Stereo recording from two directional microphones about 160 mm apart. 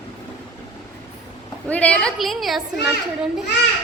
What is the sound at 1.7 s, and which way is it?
Speech, 5° left (ahead or behind).